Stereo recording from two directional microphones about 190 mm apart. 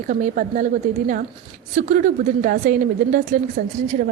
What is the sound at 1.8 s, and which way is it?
A woman's voice, 45° right (ahead or behind).